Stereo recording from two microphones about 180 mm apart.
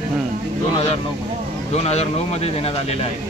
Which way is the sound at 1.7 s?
35° left (ahead or behind).